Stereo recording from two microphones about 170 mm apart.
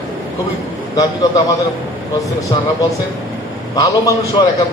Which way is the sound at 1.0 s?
20° left (ahead or behind).